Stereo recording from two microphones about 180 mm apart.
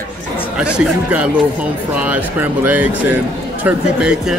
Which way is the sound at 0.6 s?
5° right (ahead or behind).